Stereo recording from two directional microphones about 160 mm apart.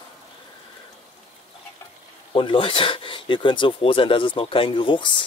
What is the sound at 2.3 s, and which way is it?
Speech, 30° left (ahead or behind).